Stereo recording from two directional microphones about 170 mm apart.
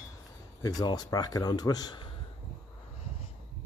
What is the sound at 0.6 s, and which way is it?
Speech, 25° left (ahead or behind).